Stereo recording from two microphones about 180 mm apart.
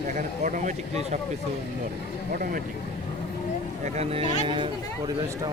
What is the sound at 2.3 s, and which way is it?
Speech, 55° right (ahead or behind).